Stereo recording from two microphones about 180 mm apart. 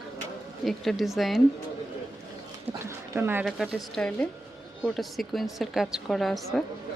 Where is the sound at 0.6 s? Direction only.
Centre (ahead or behind).